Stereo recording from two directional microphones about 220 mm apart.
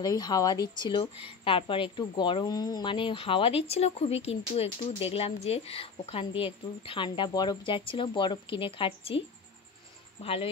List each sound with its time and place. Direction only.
0.0 s a woman's voice: 15° left (ahead or behind)
10.2 s a woman's voice: 25° left (ahead or behind)